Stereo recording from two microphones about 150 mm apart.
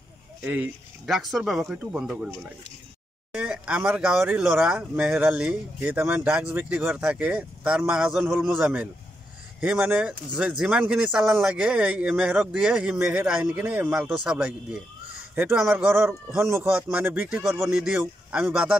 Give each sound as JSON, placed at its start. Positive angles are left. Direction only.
{"t": 0.4, "sound": "speech", "side_deg": -10}
{"t": 3.3, "sound": "speech", "side_deg": -10}
{"t": 17.6, "sound": "speech", "side_deg": -5}